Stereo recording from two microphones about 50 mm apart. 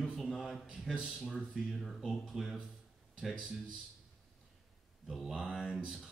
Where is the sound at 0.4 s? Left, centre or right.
Centre.